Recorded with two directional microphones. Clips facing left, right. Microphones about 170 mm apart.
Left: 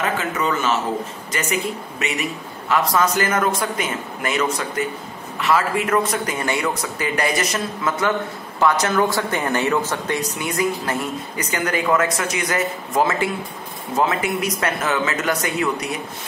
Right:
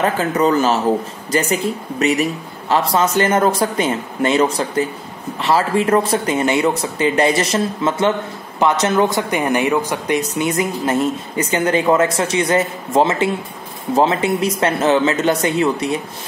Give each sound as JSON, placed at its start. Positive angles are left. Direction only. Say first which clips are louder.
{"t": 0.0, "sound": "speech", "louder": "right 6 dB", "side_deg": -35}